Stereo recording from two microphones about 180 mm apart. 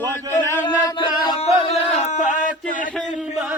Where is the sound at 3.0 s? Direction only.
Centre (ahead or behind).